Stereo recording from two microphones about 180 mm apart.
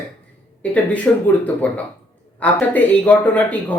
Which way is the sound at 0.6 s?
5° left (ahead or behind).